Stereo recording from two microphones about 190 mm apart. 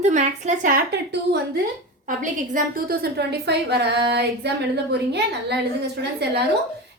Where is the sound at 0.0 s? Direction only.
35° right (ahead or behind).